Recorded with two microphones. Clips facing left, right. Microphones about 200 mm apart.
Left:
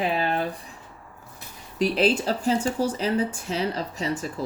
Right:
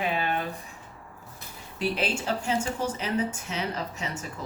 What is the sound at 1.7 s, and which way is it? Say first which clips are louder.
Speech: left 7 dB; 35° left (ahead or behind).